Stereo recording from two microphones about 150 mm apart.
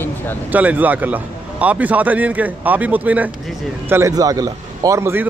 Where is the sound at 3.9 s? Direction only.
20° right (ahead or behind).